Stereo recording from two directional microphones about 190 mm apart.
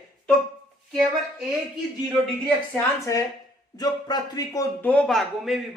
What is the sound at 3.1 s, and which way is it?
Speech, 15° left (ahead or behind).